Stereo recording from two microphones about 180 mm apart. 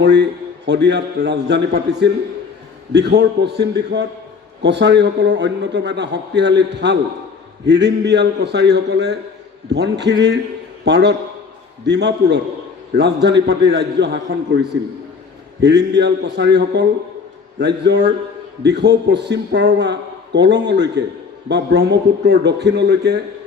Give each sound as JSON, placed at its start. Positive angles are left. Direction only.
{"t": 0.0, "sound": "a man's voice", "side_deg": -70}
{"t": 15.6, "sound": "a man's voice", "side_deg": -70}